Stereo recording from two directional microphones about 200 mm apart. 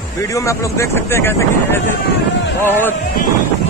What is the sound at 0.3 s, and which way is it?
Speech, 15° left (ahead or behind).